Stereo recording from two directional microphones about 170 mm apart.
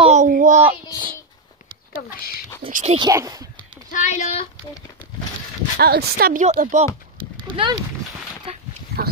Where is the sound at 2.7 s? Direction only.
50° right (ahead or behind).